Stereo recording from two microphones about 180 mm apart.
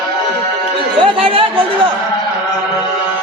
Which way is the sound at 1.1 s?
30° right (ahead or behind).